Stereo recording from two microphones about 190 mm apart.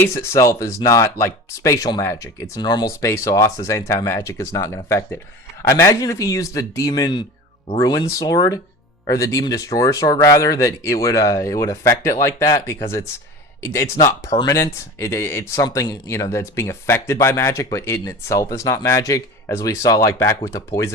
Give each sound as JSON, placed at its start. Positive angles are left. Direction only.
{"t": 0.0, "sound": "speech", "side_deg": 15}
{"t": 14.3, "sound": "speech", "side_deg": 15}